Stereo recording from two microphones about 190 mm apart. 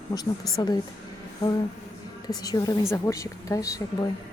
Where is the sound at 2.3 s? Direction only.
20° left (ahead or behind).